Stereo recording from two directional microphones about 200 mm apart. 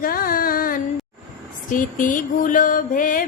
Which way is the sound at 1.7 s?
40° left (ahead or behind).